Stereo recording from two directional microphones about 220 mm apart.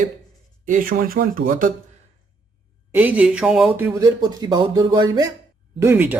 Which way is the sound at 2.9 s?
5° right (ahead or behind).